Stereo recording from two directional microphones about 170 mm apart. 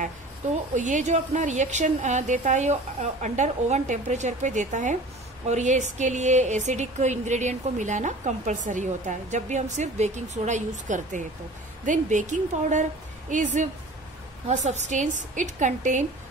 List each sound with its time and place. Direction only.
0.7 s speech: 45° right (ahead or behind)